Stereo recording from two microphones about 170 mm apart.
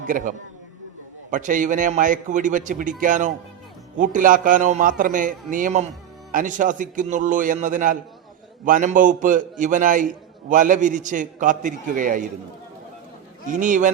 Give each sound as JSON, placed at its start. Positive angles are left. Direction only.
{"t": 0.0, "sound": "a man's voice", "side_deg": -50}
{"t": 13.5, "sound": "a man's voice", "side_deg": -50}